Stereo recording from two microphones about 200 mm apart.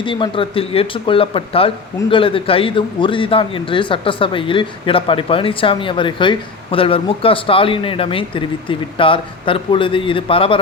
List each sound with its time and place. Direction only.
0.0 s a man's voice: 25° left (ahead or behind)